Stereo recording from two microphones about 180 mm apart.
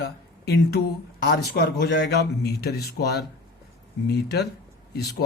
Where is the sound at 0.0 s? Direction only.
65° left (ahead or behind).